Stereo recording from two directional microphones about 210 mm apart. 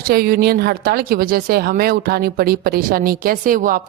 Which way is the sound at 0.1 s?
45° right (ahead or behind).